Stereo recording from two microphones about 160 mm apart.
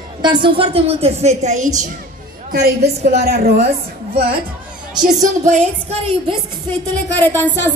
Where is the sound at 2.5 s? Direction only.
70° right (ahead or behind).